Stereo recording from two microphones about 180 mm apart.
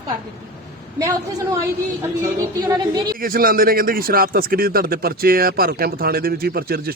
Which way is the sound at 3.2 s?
55° right (ahead or behind).